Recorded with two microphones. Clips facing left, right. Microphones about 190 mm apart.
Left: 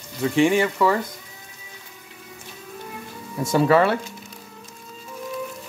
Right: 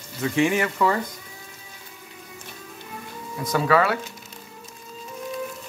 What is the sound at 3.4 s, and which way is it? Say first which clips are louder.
Speech: left 3 dB; 25° left (ahead or behind).